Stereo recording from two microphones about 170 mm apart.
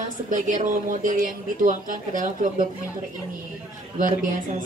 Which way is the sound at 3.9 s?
50° right (ahead or behind).